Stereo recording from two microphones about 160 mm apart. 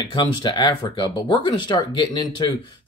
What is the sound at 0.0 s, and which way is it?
Speech, 30° left (ahead or behind).